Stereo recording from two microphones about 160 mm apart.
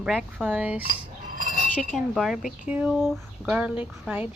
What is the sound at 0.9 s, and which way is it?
Cutlery, 60° right (ahead or behind).